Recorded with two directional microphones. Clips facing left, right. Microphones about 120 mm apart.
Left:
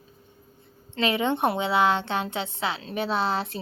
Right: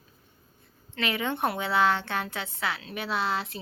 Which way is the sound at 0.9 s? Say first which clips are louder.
Left 5 dB; 25° left (ahead or behind).